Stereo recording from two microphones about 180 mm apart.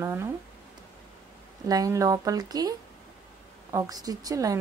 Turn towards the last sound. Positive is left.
turn(degrees=-20)  # may be behind; listen again after turning